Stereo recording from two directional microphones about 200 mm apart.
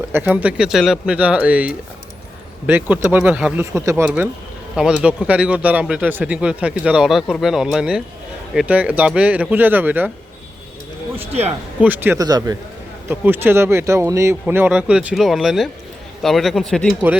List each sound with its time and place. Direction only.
0.1 s speech: 10° right (ahead or behind)
2.9 s speech: 10° right (ahead or behind)
11.8 s speech: 10° right (ahead or behind)